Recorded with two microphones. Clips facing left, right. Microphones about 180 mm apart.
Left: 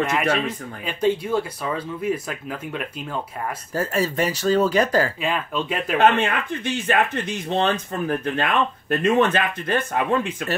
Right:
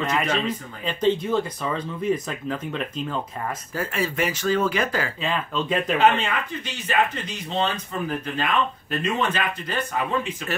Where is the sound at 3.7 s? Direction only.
40° left (ahead or behind).